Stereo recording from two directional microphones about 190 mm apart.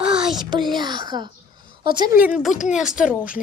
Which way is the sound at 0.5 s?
25° right (ahead or behind).